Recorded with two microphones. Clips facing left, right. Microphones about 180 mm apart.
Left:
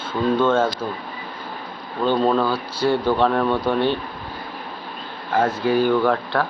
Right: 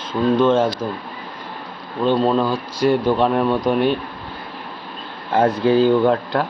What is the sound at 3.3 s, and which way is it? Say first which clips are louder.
Speech: right 2 dB; 15° right (ahead or behind).